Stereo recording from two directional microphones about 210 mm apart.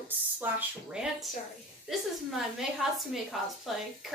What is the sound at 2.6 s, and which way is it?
A woman's voice, centre (ahead or behind).